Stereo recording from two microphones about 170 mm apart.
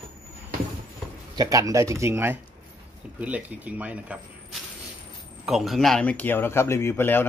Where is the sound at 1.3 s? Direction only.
20° right (ahead or behind); by 7.2 s 10° left (ahead or behind).